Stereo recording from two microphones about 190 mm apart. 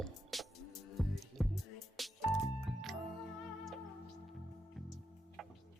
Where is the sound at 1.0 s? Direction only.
Centre (ahead or behind).